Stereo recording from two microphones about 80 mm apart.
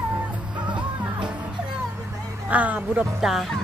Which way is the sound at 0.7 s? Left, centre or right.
Right.